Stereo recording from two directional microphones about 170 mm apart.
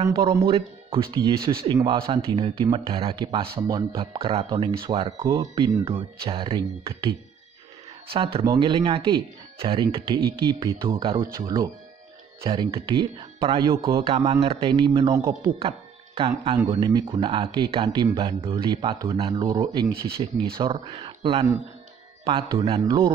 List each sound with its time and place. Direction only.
0.0 s speech: 20° right (ahead or behind)
0.5 s a man's voice: 35° right (ahead or behind)
5.2 s a man's voice: 20° right (ahead or behind)
12.4 s a man's voice: 30° right (ahead or behind)
14.7 s speech: 20° right (ahead or behind)
16.2 s a man's voice: 35° right (ahead or behind)
18.1 s a man's voice: 30° right (ahead or behind)